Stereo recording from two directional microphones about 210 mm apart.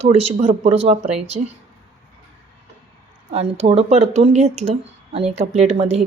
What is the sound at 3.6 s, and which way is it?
Speech, 30° right (ahead or behind).